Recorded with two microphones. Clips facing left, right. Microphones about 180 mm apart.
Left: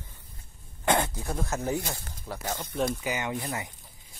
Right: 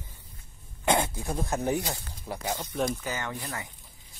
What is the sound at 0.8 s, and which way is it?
Speech, 10° right (ahead or behind).